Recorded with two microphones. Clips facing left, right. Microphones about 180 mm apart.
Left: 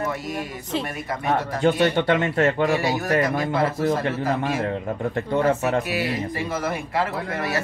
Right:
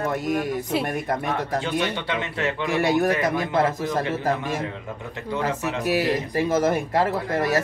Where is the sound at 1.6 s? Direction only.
50° left (ahead or behind).